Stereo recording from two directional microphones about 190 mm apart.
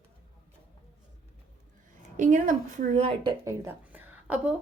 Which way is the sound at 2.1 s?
45° right (ahead or behind).